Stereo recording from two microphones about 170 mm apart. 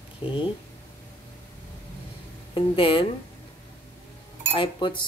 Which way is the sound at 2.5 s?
35° left (ahead or behind).